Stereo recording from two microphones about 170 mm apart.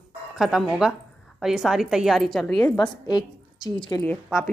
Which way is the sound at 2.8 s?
25° left (ahead or behind).